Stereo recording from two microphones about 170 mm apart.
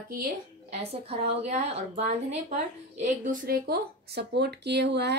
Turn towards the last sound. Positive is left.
turn(degrees=-85)